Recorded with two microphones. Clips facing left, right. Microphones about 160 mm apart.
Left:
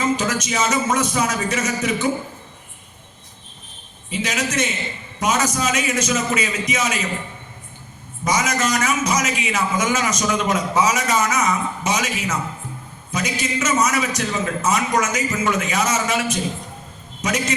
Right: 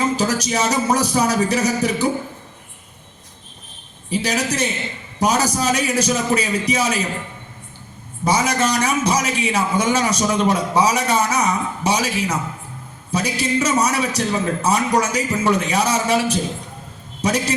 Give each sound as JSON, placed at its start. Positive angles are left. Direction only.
{"t": 0.0, "sound": "a man's voice", "side_deg": -35}
{"t": 4.1, "sound": "a man's voice", "side_deg": -35}
{"t": 8.2, "sound": "a man's voice", "side_deg": -30}